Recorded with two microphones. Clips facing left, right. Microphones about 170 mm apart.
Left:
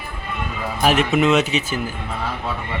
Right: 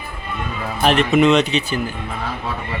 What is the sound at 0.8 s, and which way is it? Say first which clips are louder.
Speech: right 3 dB; 5° left (ahead or behind).